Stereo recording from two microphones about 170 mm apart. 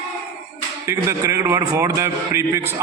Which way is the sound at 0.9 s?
15° right (ahead or behind).